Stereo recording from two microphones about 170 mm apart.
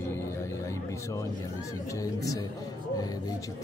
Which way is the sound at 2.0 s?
20° left (ahead or behind).